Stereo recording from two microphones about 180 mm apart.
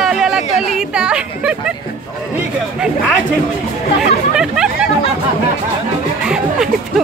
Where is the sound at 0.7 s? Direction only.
5° right (ahead or behind).